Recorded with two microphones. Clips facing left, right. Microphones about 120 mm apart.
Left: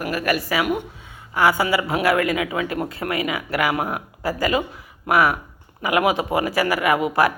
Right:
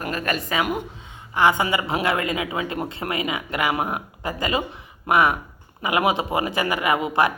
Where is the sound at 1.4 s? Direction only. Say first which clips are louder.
Left 1 dB; 20° right (ahead or behind).